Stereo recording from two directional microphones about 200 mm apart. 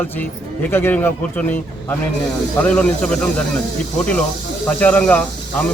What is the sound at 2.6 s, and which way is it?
Speech, 5° left (ahead or behind).